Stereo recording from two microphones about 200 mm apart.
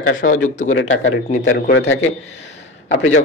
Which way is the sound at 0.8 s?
70° left (ahead or behind).